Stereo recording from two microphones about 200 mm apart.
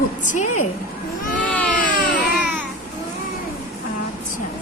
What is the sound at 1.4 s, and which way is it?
Baby cry, 5° left (ahead or behind).